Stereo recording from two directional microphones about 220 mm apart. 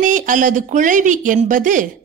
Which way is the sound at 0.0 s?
35° right (ahead or behind).